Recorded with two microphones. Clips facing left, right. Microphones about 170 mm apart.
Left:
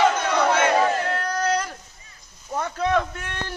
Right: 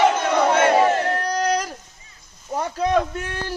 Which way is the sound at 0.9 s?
40° right (ahead or behind).